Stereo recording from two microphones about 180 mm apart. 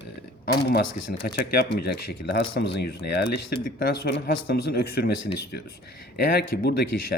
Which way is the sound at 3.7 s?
55° left (ahead or behind).